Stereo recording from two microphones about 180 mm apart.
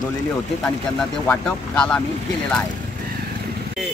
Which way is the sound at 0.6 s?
5° left (ahead or behind).